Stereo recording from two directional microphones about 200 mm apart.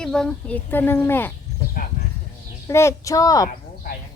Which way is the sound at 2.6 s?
15° left (ahead or behind).